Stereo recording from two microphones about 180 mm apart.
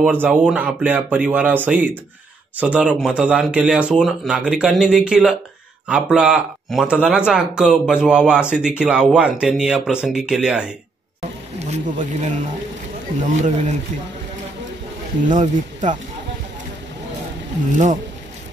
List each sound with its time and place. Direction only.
0.0 s speech: 10° right (ahead or behind)
11.6 s speech: 40° right (ahead or behind)
15.2 s speech: 45° right (ahead or behind)